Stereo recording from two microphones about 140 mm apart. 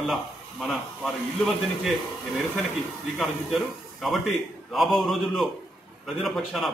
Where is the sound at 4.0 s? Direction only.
Centre (ahead or behind).